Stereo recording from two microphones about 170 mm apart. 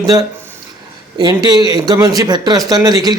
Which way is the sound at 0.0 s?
20° right (ahead or behind).